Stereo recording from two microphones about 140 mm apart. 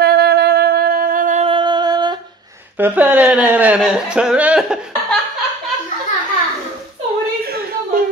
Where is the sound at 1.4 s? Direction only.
35° right (ahead or behind).